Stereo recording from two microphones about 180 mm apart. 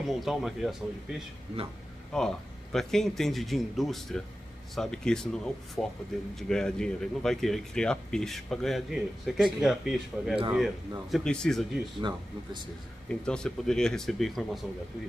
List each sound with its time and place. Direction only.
0.0 s speech: centre (ahead or behind)
12.0 s speech: 25° right (ahead or behind)
13.1 s speech: 5° left (ahead or behind)